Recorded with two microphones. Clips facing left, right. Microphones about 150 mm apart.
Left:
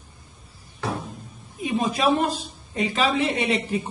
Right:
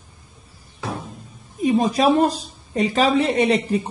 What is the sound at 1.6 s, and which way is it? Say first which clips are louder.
A woman's voice: right 5 dB; 40° right (ahead or behind).